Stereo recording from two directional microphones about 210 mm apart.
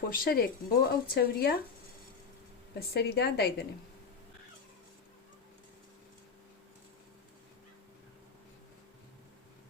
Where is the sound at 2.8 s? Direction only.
50° left (ahead or behind).